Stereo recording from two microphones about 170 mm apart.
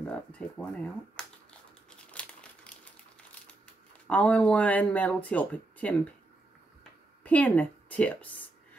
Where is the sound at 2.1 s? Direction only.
5° left (ahead or behind).